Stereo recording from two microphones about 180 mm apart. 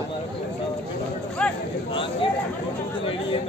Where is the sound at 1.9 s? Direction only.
30° left (ahead or behind).